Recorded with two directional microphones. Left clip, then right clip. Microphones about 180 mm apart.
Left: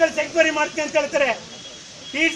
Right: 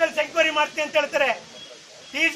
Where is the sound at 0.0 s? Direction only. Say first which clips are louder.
Left 3 dB; 20° right (ahead or behind).